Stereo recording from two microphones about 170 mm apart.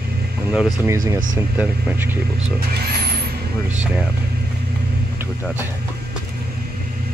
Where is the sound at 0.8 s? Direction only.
15° right (ahead or behind).